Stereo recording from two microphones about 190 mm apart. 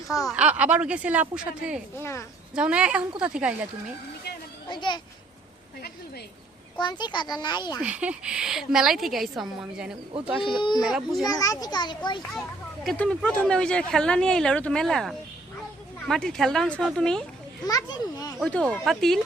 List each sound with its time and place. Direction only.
0.3 s speech: 5° right (ahead or behind)
2.0 s speech: 15° left (ahead or behind)
2.6 s speech: 5° right (ahead or behind)
4.7 s a child's voice: 25° left (ahead or behind)
6.7 s a child's voice: 25° left (ahead or behind)
7.8 s speech: 5° right (ahead or behind)
10.4 s a child's voice: 25° left (ahead or behind)
10.8 s speech: centre (ahead or behind)
11.3 s a child's voice: 20° left (ahead or behind)
12.8 s speech: 5° left (ahead or behind)
17.7 s a child's voice: 20° left (ahead or behind)
18.4 s speech: 5° left (ahead or behind)